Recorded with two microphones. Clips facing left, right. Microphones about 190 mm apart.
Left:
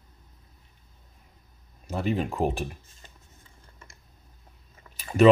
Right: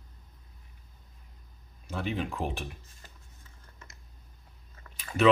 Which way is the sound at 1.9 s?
40° left (ahead or behind).